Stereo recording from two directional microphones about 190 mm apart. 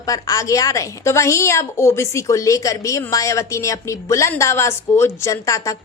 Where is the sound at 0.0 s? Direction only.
20° left (ahead or behind).